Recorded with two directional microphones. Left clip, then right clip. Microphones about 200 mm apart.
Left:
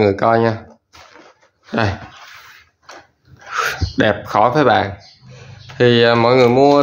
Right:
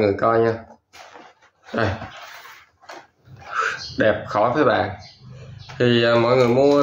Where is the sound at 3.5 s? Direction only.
50° left (ahead or behind).